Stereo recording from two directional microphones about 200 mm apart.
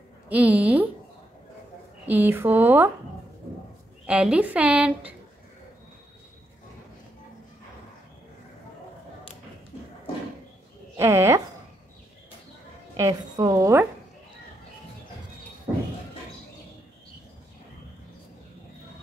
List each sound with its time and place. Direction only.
0.3 s a woman's voice: 5° right (ahead or behind)
2.0 s a woman's voice: 10° right (ahead or behind)
4.0 s a woman's voice: 5° right (ahead or behind)
11.0 s a woman's voice: 15° right (ahead or behind)
12.9 s a woman's voice: 15° right (ahead or behind)